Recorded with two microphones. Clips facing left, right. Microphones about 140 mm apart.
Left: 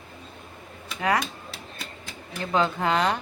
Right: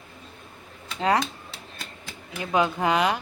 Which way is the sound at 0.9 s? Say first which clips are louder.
Right 2 dB; 25° right (ahead or behind).